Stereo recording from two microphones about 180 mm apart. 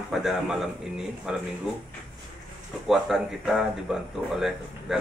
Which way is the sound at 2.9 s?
Centre (ahead or behind).